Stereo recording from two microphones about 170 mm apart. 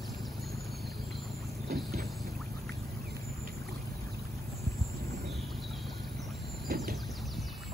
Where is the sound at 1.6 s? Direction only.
65° right (ahead or behind).